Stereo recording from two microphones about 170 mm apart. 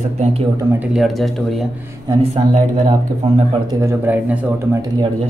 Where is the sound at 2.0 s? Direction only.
35° right (ahead or behind).